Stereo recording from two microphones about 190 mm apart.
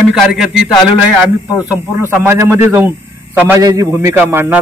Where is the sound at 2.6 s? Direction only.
10° right (ahead or behind).